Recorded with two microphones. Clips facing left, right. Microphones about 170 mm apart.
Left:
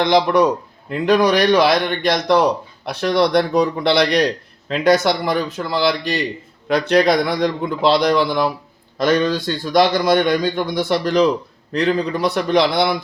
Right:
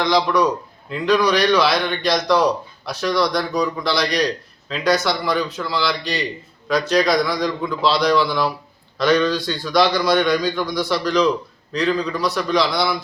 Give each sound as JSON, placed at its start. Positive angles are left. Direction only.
{"t": 0.0, "sound": "a man's voice", "side_deg": 55}